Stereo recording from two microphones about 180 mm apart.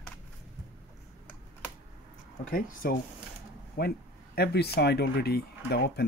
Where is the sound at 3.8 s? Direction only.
65° left (ahead or behind).